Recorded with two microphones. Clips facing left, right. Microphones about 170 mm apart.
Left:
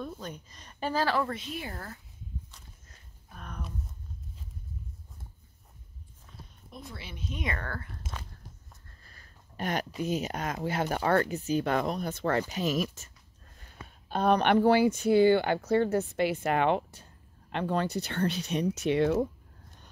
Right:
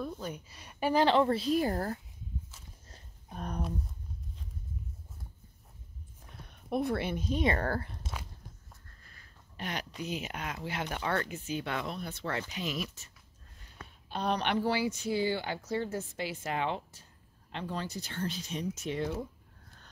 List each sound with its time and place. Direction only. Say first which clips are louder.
0.0 s speech: right 1 dB; 10° right (ahead or behind); by 2.0 s 40° right (ahead or behind)
2.9 s a sound: right 6 dB; 35° right (ahead or behind)
6.4 s speech: right 15 dB; 65° right (ahead or behind)
7.2 s speech: right 5 dB; 35° right (ahead or behind)
9.0 s a sound: left 2 dB; 40° left (ahead or behind)
10.0 s speech: left 5 dB; 40° left (ahead or behind); by 19.2 s 75° left (ahead or behind)